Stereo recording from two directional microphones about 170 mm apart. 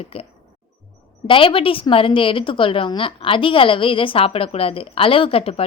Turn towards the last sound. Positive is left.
turn(degrees=35)  # may be behind; listen again after turning